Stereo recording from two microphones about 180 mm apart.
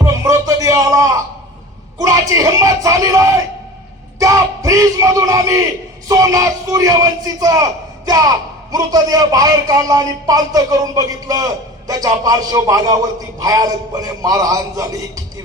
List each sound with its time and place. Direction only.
0.0 s music: 15° right (ahead or behind)
2.0 s a man's voice: 20° right (ahead or behind)
4.2 s a sound: 20° right (ahead or behind)
6.1 s a man's voice: 20° right (ahead or behind)